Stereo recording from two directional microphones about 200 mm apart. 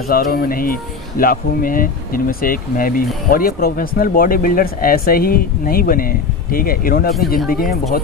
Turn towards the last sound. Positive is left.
turn(degrees=50)  # may be behind; listen again after turning